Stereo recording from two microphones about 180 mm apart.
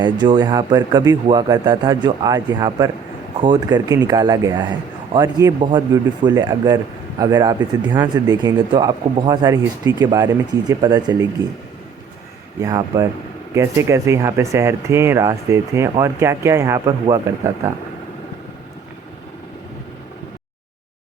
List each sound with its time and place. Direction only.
0.0 s speech: 25° right (ahead or behind)
12.5 s speech: 20° right (ahead or behind)